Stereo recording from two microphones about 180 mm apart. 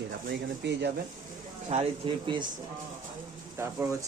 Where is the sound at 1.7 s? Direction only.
35° right (ahead or behind).